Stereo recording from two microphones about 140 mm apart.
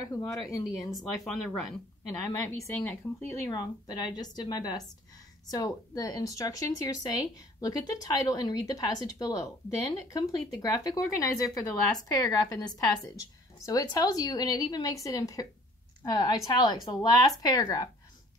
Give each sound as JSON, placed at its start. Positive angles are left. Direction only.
{"t": 0.0, "sound": "speech", "side_deg": 25}
{"t": 1.2, "sound": "speech", "side_deg": 0}
{"t": 2.3, "sound": "speech", "side_deg": 20}